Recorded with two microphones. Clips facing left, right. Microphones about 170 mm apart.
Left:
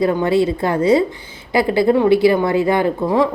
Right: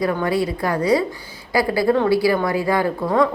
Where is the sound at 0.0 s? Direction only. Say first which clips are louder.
Left 5 dB; 25° left (ahead or behind).